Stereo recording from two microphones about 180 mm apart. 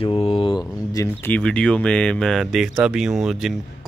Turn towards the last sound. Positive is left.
turn(degrees=0)  # may be behind; listen again after turning